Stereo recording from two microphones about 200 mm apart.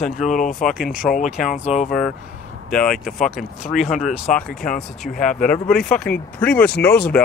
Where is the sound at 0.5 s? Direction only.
Centre (ahead or behind).